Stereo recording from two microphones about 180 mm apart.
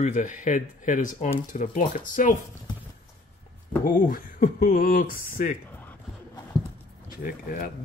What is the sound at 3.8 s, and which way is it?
Speech, 50° left (ahead or behind).